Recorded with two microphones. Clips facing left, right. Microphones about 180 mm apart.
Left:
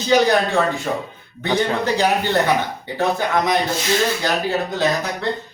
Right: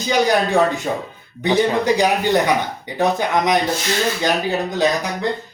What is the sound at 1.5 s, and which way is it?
Speech, 15° right (ahead or behind).